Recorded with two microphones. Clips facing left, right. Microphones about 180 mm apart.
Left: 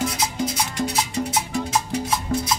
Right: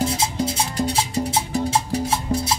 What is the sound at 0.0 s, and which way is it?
Music, 30° right (ahead or behind).